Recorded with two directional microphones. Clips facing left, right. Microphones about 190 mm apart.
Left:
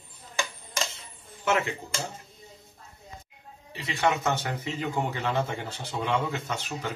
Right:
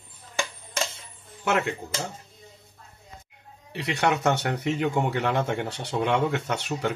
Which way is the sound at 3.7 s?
70° right (ahead or behind).